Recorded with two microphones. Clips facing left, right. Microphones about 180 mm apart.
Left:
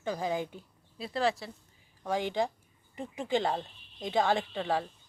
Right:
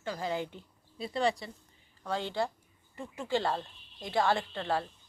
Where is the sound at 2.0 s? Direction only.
15° left (ahead or behind).